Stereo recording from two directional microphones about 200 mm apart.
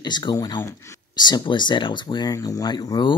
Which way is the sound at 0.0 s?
20° left (ahead or behind).